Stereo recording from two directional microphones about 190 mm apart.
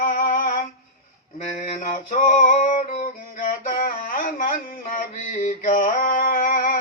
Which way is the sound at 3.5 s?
45° left (ahead or behind).